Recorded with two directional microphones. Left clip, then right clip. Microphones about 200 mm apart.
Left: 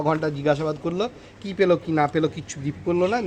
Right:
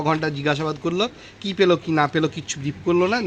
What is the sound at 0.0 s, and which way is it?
A man's voice, 45° right (ahead or behind).